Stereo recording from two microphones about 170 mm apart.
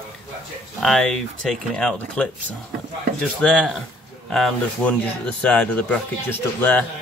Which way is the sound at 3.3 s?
5° left (ahead or behind).